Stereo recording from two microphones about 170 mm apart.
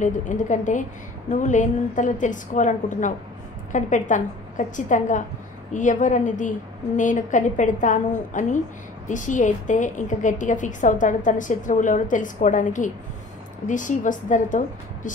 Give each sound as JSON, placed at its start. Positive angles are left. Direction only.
{"t": 0.0, "sound": "a woman's voice", "side_deg": 45}